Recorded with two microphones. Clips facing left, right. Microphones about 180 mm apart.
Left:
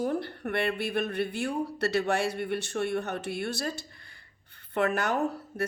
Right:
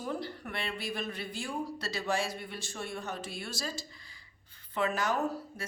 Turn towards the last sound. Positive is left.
turn(degrees=60)  # may be behind; listen again after turning